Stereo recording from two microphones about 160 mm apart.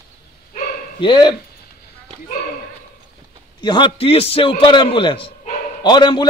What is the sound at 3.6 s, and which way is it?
A man's voice, 30° left (ahead or behind).